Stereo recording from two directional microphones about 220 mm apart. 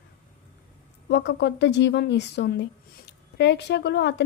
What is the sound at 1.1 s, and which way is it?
A woman's voice, 50° left (ahead or behind).